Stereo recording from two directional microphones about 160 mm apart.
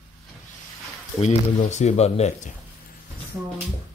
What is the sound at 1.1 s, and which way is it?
Speech, 45° left (ahead or behind).